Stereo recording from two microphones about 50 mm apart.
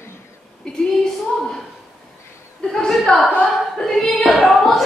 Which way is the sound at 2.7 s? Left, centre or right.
Centre.